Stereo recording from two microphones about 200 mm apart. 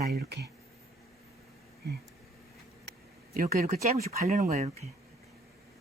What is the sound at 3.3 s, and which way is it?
Speech, 40° right (ahead or behind).